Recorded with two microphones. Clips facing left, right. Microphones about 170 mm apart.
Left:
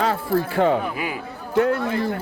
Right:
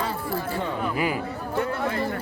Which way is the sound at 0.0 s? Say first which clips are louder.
Left 7 dB; 80° left.